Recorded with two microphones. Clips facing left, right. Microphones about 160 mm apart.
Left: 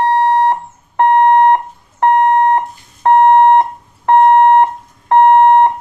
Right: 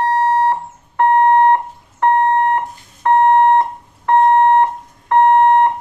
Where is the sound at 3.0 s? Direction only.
20° left (ahead or behind).